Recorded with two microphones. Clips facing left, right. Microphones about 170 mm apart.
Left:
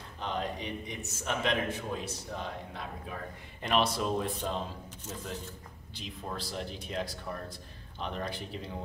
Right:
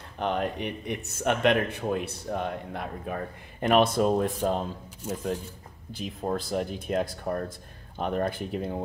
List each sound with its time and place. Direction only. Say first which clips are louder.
0.2 s speech: right 7 dB; 60° right (ahead or behind)
5.9 s speech: right 9 dB; 50° right (ahead or behind)